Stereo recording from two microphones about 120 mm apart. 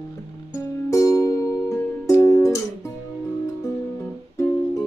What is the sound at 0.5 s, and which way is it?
Music, 25° left (ahead or behind).